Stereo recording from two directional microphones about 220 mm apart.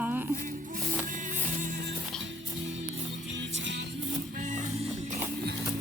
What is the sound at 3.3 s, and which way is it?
Music, 55° right (ahead or behind).